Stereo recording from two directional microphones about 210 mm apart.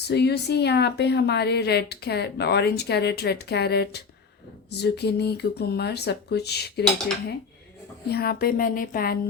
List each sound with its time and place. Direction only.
0.1 s speech: 50° left (ahead or behind)
8.0 s speech: 50° left (ahead or behind)